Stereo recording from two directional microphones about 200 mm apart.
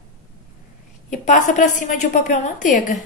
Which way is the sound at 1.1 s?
40° left (ahead or behind).